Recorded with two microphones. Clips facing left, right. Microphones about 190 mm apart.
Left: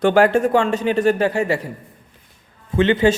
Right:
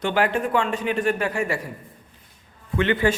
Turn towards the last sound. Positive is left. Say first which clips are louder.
# left 6 dB
turn(degrees=25)  # may be behind; listen again after turning